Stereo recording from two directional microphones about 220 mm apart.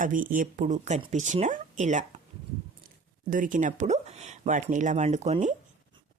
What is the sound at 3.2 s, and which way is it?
Speech, 40° right (ahead or behind).